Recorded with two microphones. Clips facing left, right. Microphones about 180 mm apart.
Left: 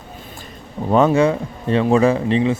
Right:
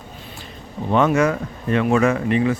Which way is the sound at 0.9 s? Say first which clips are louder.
Left 3 dB; 35° left (ahead or behind).